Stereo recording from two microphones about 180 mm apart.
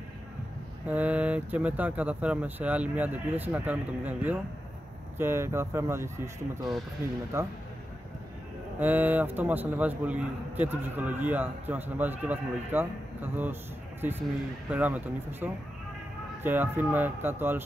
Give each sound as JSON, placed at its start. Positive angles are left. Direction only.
{"t": 0.8, "sound": "a man's voice", "side_deg": -10}
{"t": 8.7, "sound": "a man's voice", "side_deg": -10}